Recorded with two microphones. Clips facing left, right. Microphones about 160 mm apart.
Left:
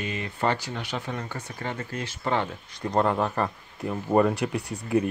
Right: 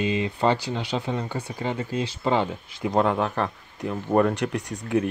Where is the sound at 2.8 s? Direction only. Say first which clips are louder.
Right 2 dB; 5° right (ahead or behind).